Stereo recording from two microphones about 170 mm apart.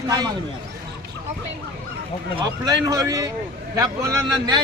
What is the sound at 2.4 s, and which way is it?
A man's voice, 20° right (ahead or behind).